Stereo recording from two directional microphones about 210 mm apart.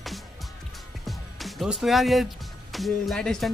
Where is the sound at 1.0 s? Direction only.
Centre (ahead or behind).